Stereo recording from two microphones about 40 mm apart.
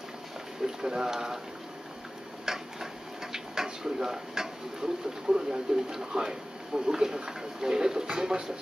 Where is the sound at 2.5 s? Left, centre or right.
Centre.